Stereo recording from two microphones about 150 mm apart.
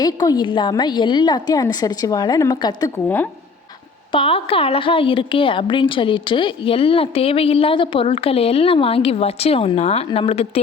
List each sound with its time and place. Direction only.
0.0 s a woman's voice: 25° left (ahead or behind)
4.1 s a woman's voice: 35° left (ahead or behind)